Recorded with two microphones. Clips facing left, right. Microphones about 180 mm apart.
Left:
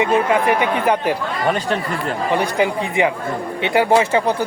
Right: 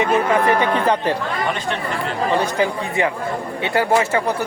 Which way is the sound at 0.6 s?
10° left (ahead or behind).